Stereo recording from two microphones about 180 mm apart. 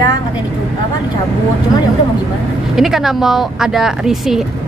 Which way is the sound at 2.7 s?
Centre (ahead or behind).